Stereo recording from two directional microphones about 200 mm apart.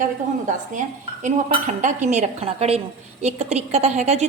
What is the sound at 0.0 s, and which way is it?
Speech, 40° right (ahead or behind).